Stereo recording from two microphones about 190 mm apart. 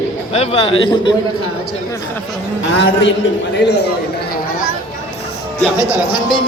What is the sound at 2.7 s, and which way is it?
Speech, 80° left.